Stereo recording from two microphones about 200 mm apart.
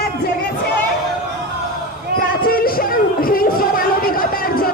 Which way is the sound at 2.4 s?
50° left (ahead or behind).